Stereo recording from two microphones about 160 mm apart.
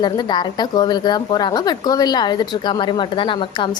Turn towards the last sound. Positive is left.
turn(degrees=30)  # may be behind; listen again after turning